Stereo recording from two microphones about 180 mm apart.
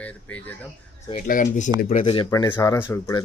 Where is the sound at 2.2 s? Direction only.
15° left (ahead or behind).